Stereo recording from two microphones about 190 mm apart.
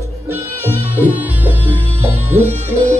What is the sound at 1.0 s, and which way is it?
Music, 10° right (ahead or behind).